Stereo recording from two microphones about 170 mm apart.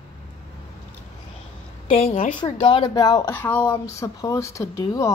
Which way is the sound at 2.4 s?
25° left (ahead or behind).